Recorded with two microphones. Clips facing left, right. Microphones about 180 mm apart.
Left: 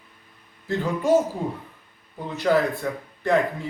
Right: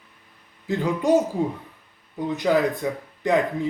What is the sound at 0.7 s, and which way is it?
Speech, 15° right (ahead or behind).